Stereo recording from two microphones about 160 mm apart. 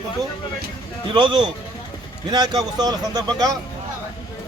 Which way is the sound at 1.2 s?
30° right (ahead or behind).